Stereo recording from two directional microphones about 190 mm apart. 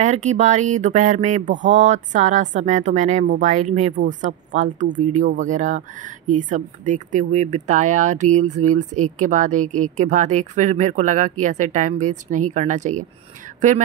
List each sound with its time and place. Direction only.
0.0 s speech: 35° right (ahead or behind)